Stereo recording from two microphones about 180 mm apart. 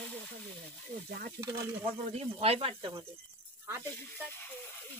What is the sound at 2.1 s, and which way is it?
Speech, 35° right (ahead or behind).